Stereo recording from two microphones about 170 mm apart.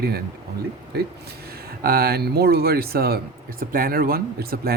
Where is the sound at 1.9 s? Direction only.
65° right (ahead or behind).